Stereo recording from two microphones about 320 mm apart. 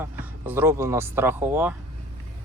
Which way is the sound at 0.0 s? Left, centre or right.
Centre.